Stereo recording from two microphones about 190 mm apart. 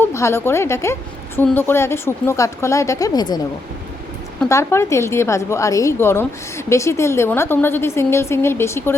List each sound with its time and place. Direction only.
0.0 s a woman's voice: 15° left (ahead or behind)
4.4 s a woman's voice: 15° left (ahead or behind)